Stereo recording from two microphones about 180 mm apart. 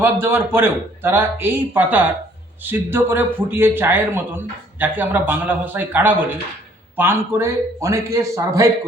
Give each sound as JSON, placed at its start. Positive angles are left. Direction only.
{"t": 0.0, "sound": "a man's voice", "side_deg": -15}